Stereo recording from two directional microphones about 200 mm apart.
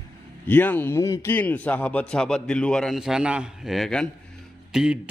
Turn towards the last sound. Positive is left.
turn(degrees=-5)  # may be behind; listen again after turning